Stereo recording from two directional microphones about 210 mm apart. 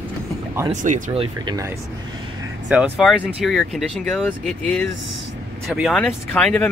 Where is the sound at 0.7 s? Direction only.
35° right (ahead or behind); by 1.7 s 20° right (ahead or behind).